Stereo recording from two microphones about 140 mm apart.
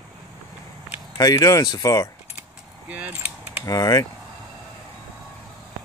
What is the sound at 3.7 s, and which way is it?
Speech, 25° left (ahead or behind).